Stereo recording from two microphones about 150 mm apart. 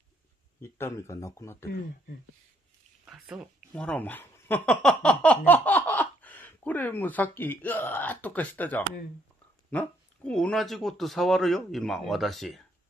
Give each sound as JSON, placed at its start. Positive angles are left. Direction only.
{"t": 0.6, "sound": "speech", "side_deg": 15}
{"t": 3.1, "sound": "speech", "side_deg": -5}
{"t": 3.7, "sound": "speech", "side_deg": 10}